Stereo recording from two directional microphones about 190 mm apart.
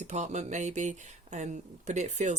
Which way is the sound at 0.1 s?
40° right (ahead or behind).